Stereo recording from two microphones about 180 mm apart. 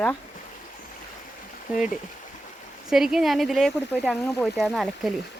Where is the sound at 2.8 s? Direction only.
Centre (ahead or behind).